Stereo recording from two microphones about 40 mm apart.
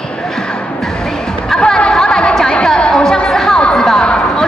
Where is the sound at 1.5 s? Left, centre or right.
Centre.